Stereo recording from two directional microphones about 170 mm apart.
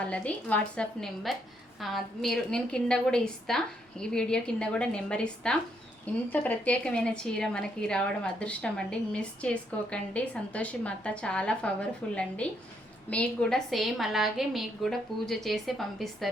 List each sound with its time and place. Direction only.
0.0 s a woman's voice: 10° left (ahead or behind)